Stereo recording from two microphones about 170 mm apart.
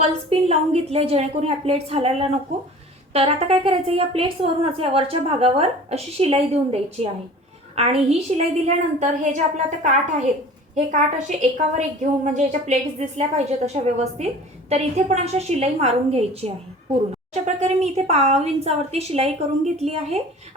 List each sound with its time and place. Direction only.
0.0 s a woman's voice: 35° right (ahead or behind)